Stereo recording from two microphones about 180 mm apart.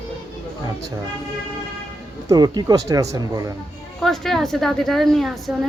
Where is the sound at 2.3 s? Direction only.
20° right (ahead or behind).